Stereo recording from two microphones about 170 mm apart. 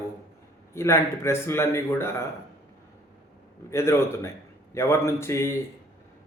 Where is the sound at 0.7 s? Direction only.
15° left (ahead or behind).